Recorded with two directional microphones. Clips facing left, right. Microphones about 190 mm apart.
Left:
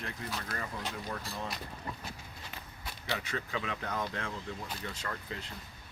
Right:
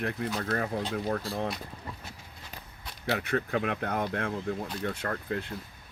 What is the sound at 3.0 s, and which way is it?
Speech, 60° right (ahead or behind).